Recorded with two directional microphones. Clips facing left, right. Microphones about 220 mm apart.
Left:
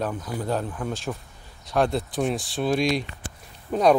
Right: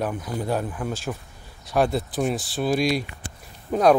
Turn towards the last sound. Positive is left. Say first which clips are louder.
# right 1 dB
turn(degrees=0)  # may be behind; listen again after turning